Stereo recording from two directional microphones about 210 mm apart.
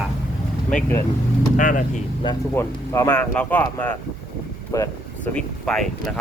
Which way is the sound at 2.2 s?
15° left (ahead or behind).